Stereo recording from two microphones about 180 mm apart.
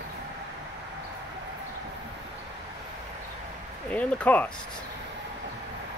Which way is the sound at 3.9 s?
10° left (ahead or behind).